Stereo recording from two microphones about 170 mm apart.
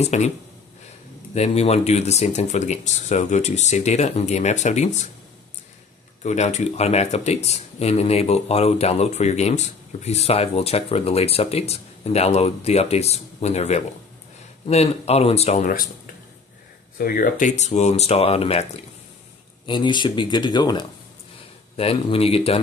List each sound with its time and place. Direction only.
0.0 s speech: 40° left (ahead or behind)
1.3 s speech: 40° left (ahead or behind)
6.2 s speech: 40° left (ahead or behind)
17.0 s speech: 55° left (ahead or behind); by 22.6 s 35° left (ahead or behind)